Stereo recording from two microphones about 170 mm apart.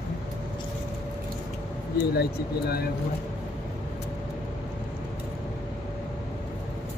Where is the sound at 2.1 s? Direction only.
70° left (ahead or behind).